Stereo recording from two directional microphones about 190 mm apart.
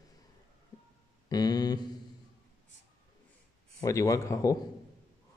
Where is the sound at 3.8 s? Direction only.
15° left (ahead or behind).